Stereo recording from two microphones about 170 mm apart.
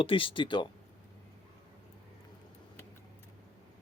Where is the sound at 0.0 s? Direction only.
30° left (ahead or behind).